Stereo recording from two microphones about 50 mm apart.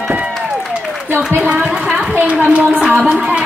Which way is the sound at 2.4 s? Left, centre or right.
Right.